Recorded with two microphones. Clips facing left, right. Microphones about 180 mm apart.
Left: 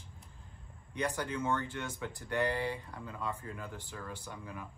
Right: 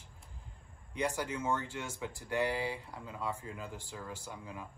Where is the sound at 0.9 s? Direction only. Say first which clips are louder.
Even; 10° right (ahead or behind).